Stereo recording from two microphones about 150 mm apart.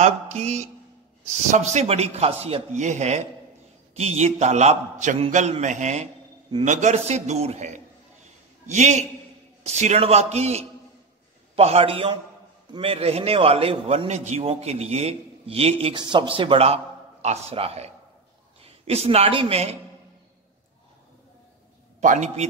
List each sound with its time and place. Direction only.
0.0 s a man's voice: 50° right (ahead or behind)
22.0 s a man's voice: 55° right (ahead or behind)